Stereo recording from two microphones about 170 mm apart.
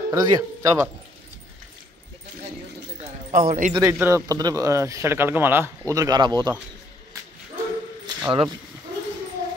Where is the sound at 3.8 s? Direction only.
15° right (ahead or behind).